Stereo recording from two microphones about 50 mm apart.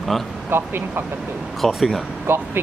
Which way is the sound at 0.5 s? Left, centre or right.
Right.